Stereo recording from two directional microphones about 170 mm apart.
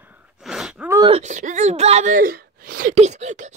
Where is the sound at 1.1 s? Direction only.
45° right (ahead or behind).